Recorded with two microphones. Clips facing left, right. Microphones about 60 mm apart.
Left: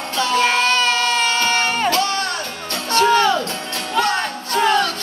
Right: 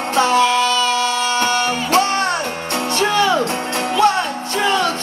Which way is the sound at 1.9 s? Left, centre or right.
Right.